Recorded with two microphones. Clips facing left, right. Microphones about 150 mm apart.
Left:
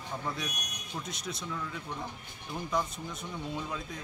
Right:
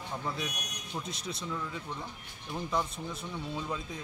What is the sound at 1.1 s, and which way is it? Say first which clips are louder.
Speech: even; 30° right (ahead or behind).